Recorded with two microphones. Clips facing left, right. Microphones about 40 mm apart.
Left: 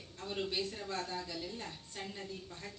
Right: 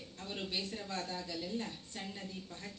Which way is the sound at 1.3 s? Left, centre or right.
Centre.